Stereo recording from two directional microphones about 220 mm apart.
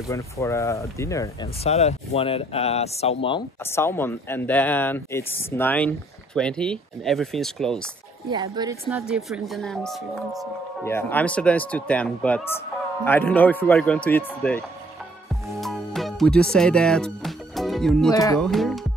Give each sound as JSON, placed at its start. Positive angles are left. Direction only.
{"t": 0.1, "sound": "speech", "side_deg": 15}
{"t": 1.6, "sound": "speech", "side_deg": 30}
{"t": 3.6, "sound": "speech", "side_deg": 10}
{"t": 8.3, "sound": "speech", "side_deg": -20}
{"t": 8.9, "sound": "speech", "side_deg": -5}
{"t": 10.8, "sound": "speech", "side_deg": 10}
{"t": 15.6, "sound": "music", "side_deg": 0}
{"t": 18.1, "sound": "speech", "side_deg": 15}
{"t": 18.4, "sound": "speech", "side_deg": 0}